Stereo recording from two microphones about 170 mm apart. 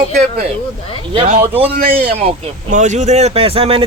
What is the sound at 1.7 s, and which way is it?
Speech, 75° right (ahead or behind).